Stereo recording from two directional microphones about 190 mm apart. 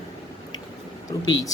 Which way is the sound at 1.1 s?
20° left (ahead or behind).